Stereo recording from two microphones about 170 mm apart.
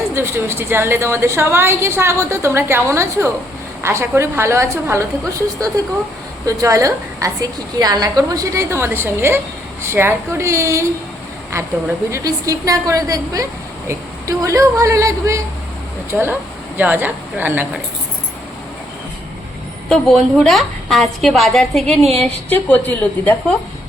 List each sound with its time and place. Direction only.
0.1 s a woman's voice: 15° right (ahead or behind)
12.1 s a woman's voice: 20° right (ahead or behind)
16.1 s a woman's voice: 5° right (ahead or behind)
19.9 s a woman's voice: centre (ahead or behind)